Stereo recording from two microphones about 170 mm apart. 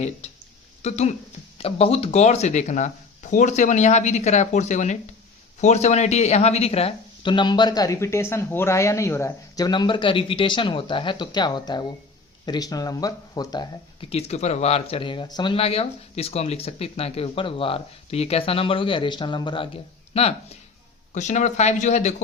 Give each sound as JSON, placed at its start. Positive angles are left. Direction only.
{"t": 0.8, "sound": "speech", "side_deg": 40}
{"t": 14.1, "sound": "speech", "side_deg": 40}